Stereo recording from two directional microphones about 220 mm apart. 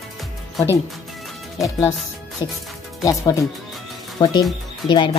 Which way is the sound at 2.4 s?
20° left (ahead or behind).